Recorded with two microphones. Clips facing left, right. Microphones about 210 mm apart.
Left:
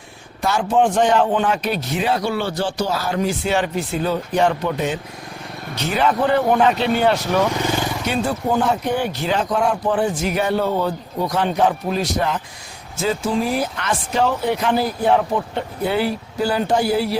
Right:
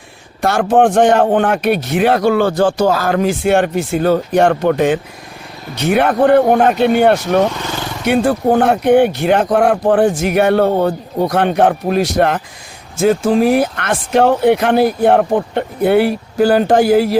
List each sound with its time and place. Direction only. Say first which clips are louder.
0.4 s a man's voice: right 6 dB; 60° right (ahead or behind)
2.9 s speech: right 6 dB; 90° right
3.4 s a man's voice: right 7 dB; 55° right (ahead or behind)
13.0 s speech: right 8 dB; 50° right (ahead or behind); by 16.6 s 75° right (ahead or behind)
16.7 s speech: right 6 dB; 90° right